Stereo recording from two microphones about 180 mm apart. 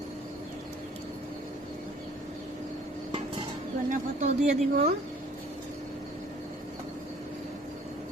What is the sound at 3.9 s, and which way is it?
Speech, 40° right (ahead or behind).